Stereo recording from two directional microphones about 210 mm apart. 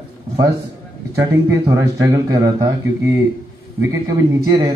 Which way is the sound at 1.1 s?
15° right (ahead or behind).